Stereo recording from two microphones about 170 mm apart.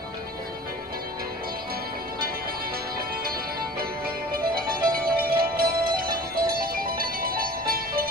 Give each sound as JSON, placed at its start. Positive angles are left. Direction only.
{"t": 4.3, "sound": "music", "side_deg": -60}